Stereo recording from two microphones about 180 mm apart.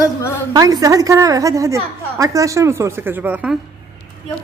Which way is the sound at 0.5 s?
20° right (ahead or behind).